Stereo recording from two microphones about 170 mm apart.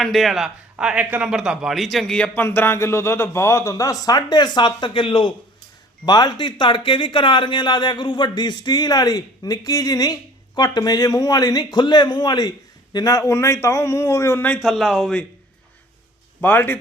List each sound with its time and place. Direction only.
0.0 s a man's voice: centre (ahead or behind)
16.4 s a man's voice: 10° left (ahead or behind)